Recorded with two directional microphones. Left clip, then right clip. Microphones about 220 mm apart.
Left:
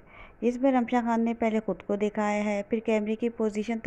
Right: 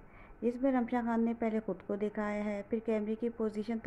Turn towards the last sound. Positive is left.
turn(degrees=15)  # may be behind; listen again after turning